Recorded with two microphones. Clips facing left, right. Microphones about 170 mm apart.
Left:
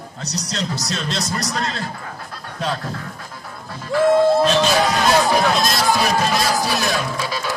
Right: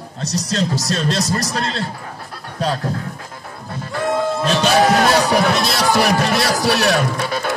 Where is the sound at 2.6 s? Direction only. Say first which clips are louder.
Right 4 dB; 40° right (ahead or behind).